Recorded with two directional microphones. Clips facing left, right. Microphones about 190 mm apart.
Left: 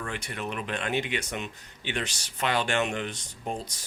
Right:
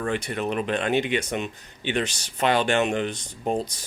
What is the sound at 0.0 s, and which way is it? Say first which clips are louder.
Speech: right 8 dB; 30° right (ahead or behind).